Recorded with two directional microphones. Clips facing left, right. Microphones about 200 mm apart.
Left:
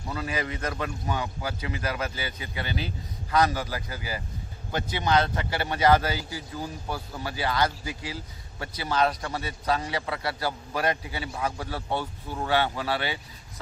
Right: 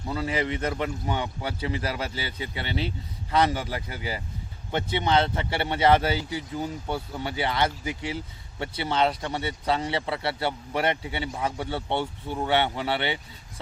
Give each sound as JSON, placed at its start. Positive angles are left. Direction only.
{"t": 0.1, "sound": "speech", "side_deg": -25}